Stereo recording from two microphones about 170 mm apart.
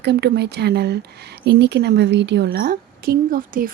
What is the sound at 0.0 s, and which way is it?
Speech, 75° right (ahead or behind).